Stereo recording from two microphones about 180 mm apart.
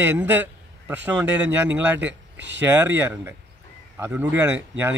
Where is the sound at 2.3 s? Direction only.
85° right.